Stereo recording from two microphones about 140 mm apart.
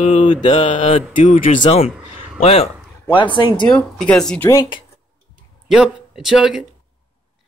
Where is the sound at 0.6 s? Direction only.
45° left (ahead or behind).